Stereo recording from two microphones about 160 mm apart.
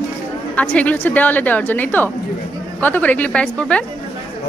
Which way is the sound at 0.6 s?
10° left (ahead or behind).